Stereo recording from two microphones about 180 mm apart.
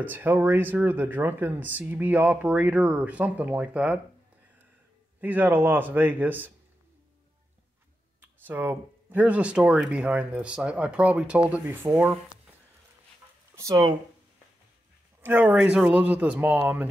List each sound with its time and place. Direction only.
0.0 s speech: 10° right (ahead or behind)
5.2 s speech: 10° right (ahead or behind)
8.2 s speech: 10° right (ahead or behind)
13.6 s speech: 20° right (ahead or behind)
15.2 s speech: 10° right (ahead or behind)